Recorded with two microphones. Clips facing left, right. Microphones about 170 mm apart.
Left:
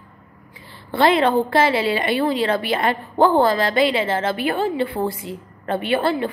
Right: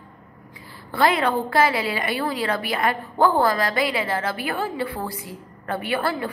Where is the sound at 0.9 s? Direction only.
25° left (ahead or behind).